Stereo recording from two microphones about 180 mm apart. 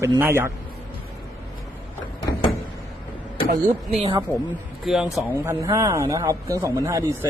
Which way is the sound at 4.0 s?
35° right (ahead or behind).